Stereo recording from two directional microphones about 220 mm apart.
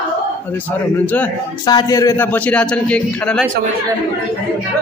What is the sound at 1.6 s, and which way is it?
A man's voice, 20° left (ahead or behind).